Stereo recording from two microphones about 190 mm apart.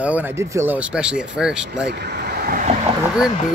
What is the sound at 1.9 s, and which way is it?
Speech, 65° right (ahead or behind).